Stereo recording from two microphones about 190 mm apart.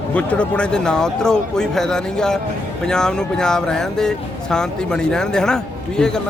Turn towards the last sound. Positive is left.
turn(degrees=5)  # may be behind; listen again after turning